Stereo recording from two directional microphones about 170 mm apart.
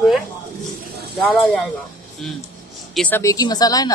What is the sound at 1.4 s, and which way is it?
Speech, 5° left (ahead or behind).